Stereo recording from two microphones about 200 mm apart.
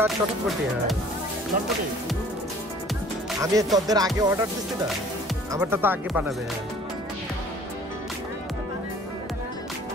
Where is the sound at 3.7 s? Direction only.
20° right (ahead or behind).